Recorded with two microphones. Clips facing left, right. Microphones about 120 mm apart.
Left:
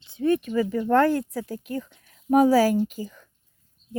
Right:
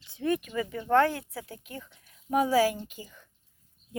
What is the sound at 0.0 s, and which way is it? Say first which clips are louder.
Speech: left 6 dB; 25° left (ahead or behind).